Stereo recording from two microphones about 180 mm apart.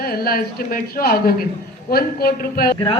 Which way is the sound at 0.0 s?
55° left (ahead or behind).